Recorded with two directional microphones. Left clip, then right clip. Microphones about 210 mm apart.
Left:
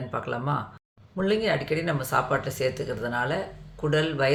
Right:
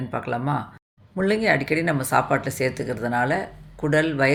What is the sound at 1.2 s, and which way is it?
Speech, 30° right (ahead or behind).